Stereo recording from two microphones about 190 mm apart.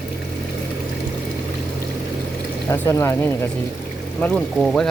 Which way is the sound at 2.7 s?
15° left (ahead or behind).